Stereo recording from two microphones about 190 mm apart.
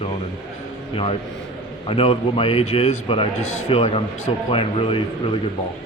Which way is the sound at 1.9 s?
30° left (ahead or behind).